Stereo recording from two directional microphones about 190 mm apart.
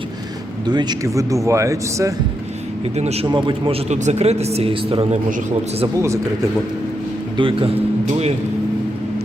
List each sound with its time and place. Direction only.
0.7 s speech: 20° right (ahead or behind)
2.9 s a man's voice: 35° right (ahead or behind)
3.8 s speech: 35° right (ahead or behind)
7.3 s a man's voice: 25° right (ahead or behind)